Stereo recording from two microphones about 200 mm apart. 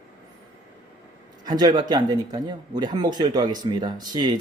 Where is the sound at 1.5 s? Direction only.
20° right (ahead or behind).